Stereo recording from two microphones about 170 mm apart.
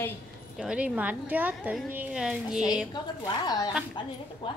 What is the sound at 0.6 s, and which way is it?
A woman's voice, 5° right (ahead or behind).